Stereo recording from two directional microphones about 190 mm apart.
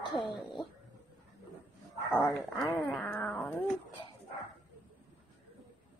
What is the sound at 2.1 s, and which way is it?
Speech, 5° left (ahead or behind).